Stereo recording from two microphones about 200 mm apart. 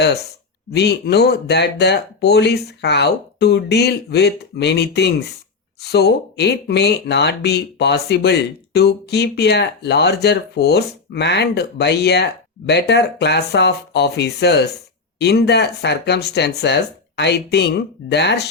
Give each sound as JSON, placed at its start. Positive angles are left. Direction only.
{"t": 0.7, "sound": "speech", "side_deg": 55}